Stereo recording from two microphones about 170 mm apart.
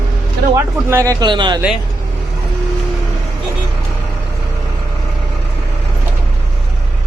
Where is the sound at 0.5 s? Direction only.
15° right (ahead or behind).